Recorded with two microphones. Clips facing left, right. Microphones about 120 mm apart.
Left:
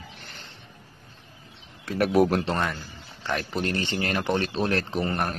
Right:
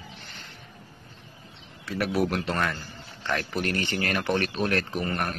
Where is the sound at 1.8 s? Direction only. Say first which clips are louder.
Left 5 dB; 45° left (ahead or behind).